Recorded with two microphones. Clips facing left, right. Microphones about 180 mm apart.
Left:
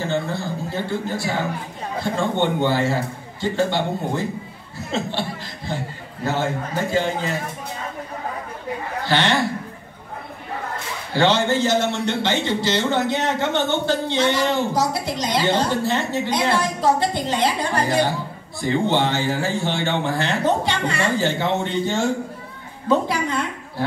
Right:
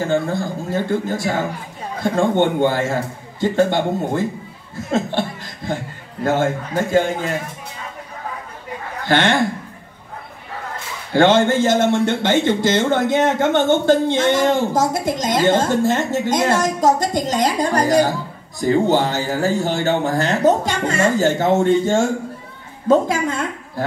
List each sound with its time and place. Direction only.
0.0 s speech: 45° right (ahead or behind)
6.2 s speech: 50° right (ahead or behind)
9.0 s speech: 50° right (ahead or behind)
11.1 s a woman's voice: 50° right (ahead or behind)